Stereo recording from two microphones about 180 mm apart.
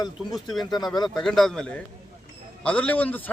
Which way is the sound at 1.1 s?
5° left (ahead or behind).